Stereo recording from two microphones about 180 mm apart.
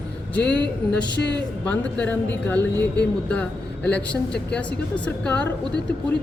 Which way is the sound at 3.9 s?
5° left (ahead or behind).